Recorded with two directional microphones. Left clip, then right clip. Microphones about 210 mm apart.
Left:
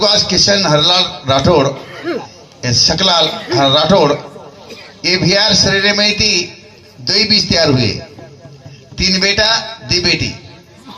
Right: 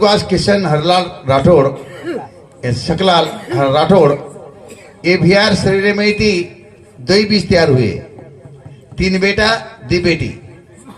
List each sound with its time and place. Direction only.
0.0 s a man's voice: 60° right (ahead or behind)